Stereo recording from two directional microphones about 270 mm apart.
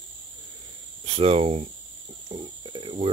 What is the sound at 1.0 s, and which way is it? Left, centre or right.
Speech, right.